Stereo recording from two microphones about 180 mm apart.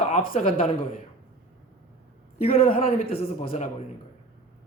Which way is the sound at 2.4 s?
35° left (ahead or behind).